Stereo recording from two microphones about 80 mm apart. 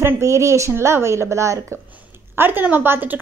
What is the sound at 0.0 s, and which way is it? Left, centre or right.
Speech, right.